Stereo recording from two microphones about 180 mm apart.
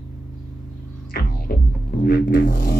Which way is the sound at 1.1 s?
55° left (ahead or behind).